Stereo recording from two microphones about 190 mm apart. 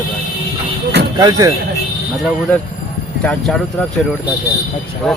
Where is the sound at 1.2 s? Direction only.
20° right (ahead or behind).